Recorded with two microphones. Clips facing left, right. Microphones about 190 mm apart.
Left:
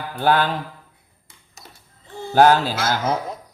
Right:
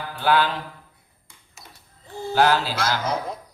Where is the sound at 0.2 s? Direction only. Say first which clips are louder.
Left 2 dB; 45° left (ahead or behind).